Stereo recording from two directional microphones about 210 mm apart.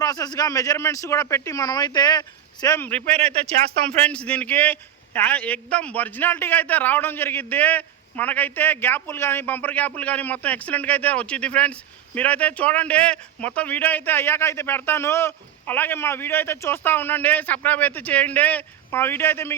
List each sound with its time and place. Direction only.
0.0 s a man's voice: 15° left (ahead or behind)
3.2 s speech: 30° right (ahead or behind)
4.0 s a man's voice: 5° left (ahead or behind)